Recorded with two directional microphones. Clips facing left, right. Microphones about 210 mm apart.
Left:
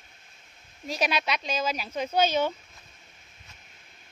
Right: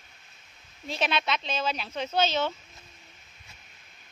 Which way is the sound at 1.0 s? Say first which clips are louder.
Even; 10° left (ahead or behind).